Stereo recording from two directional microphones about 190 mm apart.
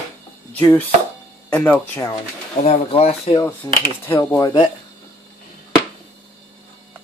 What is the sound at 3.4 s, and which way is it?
Speech, 10° left (ahead or behind).